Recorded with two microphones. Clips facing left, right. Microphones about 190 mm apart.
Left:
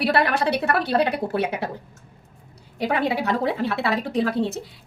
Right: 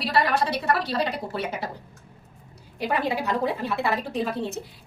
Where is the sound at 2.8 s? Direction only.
70° left (ahead or behind).